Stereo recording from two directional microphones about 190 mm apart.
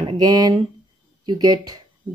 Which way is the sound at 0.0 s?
20° right (ahead or behind).